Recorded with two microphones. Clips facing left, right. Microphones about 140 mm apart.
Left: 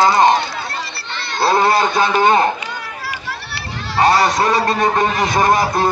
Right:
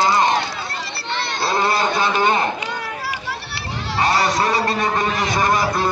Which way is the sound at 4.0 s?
45° left (ahead or behind).